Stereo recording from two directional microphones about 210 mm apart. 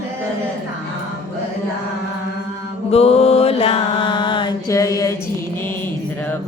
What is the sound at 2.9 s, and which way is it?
Mantra, 30° left (ahead or behind).